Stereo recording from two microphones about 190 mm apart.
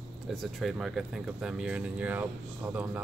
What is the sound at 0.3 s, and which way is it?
Speech, centre (ahead or behind).